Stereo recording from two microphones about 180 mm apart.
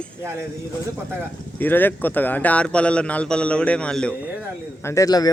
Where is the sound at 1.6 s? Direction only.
10° left (ahead or behind).